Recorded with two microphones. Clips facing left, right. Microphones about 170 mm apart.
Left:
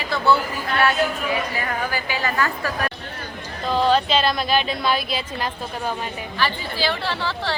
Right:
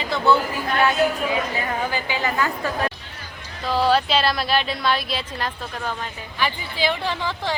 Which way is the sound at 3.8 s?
5° right (ahead or behind).